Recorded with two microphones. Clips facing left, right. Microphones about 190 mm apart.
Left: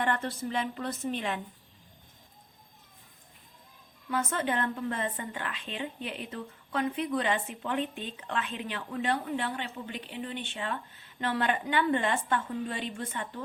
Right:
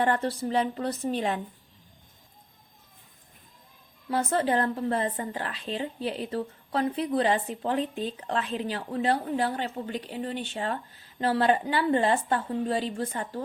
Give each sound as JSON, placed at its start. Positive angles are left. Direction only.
{"t": 0.0, "sound": "speech", "side_deg": -35}
{"t": 4.1, "sound": "speech", "side_deg": -35}